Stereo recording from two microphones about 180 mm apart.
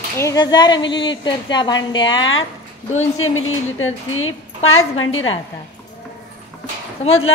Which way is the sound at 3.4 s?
90° left.